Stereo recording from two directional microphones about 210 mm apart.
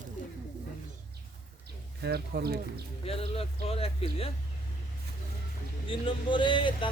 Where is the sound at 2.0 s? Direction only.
50° right (ahead or behind).